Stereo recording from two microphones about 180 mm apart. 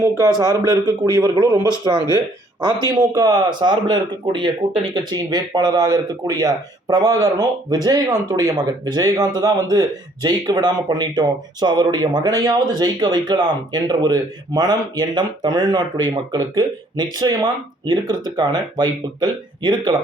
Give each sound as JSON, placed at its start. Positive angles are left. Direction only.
{"t": 0.0, "sound": "speech", "side_deg": -20}